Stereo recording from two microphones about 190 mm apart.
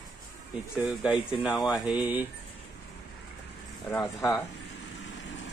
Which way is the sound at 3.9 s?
5° left (ahead or behind).